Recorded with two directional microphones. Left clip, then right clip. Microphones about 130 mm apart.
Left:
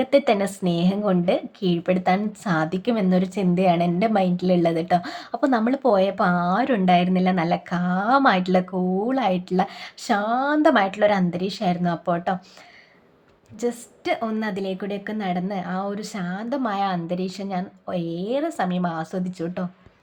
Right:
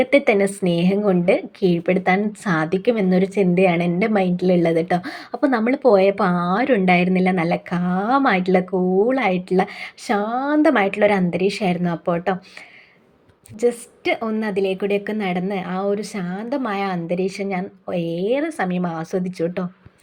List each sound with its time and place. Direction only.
0.0 s a woman's voice: 10° right (ahead or behind)
13.6 s a woman's voice: 20° right (ahead or behind)